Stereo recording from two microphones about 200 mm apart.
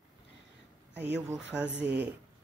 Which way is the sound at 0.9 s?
60° right (ahead or behind).